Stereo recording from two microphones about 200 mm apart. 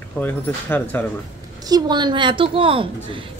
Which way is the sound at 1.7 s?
20° right (ahead or behind).